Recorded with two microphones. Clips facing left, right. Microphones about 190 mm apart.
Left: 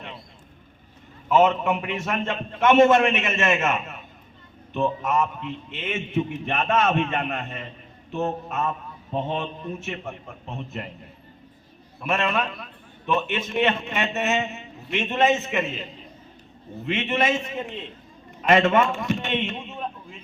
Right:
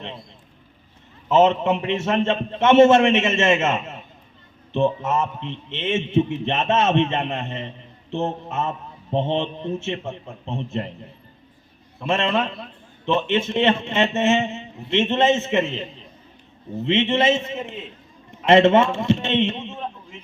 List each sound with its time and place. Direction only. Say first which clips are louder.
1.3 s a man's voice: right 2 dB; 25° right (ahead or behind)
11.9 s a man's voice: right 3 dB; 25° right (ahead or behind)